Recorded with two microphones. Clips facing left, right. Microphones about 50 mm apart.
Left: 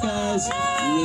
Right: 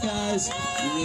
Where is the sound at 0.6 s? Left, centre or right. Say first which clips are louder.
Left 6 dB; centre.